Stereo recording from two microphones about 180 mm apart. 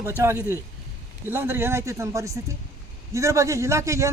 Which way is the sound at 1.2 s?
10° right (ahead or behind).